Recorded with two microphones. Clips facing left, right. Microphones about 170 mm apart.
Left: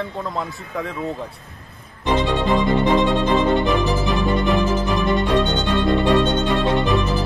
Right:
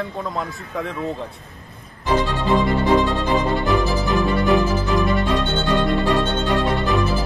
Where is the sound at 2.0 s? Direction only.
20° left (ahead or behind).